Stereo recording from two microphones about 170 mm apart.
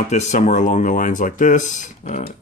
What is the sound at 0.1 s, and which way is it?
Speech, 45° left (ahead or behind).